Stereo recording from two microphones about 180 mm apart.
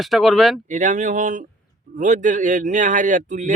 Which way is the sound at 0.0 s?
Centre (ahead or behind).